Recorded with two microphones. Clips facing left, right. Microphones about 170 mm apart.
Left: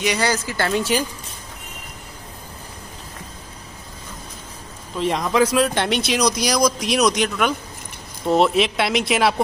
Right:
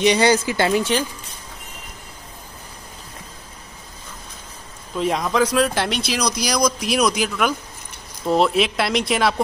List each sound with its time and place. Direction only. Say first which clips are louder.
0.0 s speech: right 5 dB; 25° right (ahead or behind)
4.9 s speech: left 1 dB; centre (ahead or behind)